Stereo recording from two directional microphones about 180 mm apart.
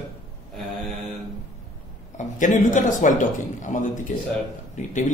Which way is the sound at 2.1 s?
45° left (ahead or behind).